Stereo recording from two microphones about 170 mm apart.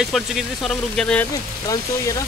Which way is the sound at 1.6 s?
20° left (ahead or behind).